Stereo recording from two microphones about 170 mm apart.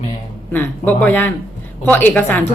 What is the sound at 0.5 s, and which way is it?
A woman's voice, 10° left (ahead or behind).